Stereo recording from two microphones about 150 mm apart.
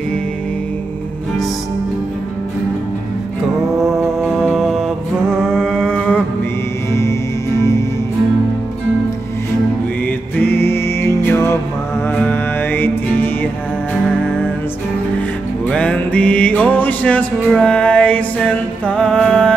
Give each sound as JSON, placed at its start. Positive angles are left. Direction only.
{"t": 4.2, "sound": "music", "side_deg": 5}
{"t": 6.9, "sound": "music", "side_deg": 20}
{"t": 10.5, "sound": "music", "side_deg": 15}
{"t": 15.7, "sound": "music", "side_deg": 10}